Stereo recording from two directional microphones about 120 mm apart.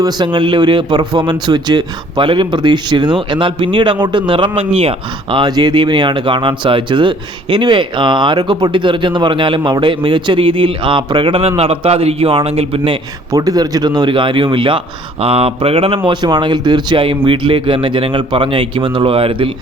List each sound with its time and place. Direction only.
0.0 s a man's voice: 40° right (ahead or behind)
13.3 s a man's voice: 30° right (ahead or behind); by 16.0 s 50° right (ahead or behind)
16.0 s a man's voice: 40° right (ahead or behind)